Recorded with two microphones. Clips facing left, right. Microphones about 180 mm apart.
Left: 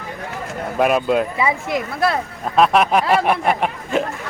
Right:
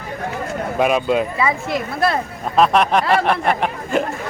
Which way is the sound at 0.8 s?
Centre (ahead or behind).